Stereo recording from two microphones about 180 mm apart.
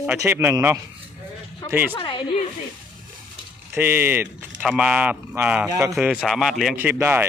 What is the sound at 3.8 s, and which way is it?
Speech, 10° right (ahead or behind).